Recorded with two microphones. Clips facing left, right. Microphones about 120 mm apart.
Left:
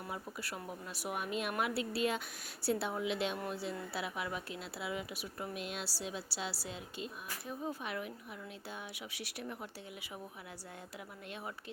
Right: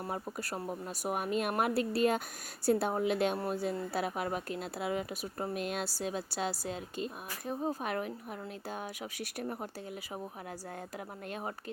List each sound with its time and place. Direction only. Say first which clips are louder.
0.1 s speech: right 4 dB; 45° right (ahead or behind)